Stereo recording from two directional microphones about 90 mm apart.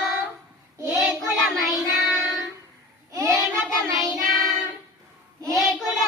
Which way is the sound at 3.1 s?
35° right (ahead or behind).